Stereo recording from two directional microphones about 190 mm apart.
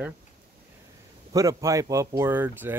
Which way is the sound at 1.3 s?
15° right (ahead or behind).